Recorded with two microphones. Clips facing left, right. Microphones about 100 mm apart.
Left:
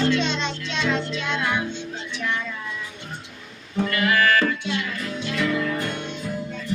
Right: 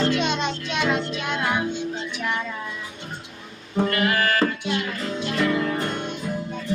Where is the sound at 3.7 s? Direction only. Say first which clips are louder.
Even; 40° right (ahead or behind).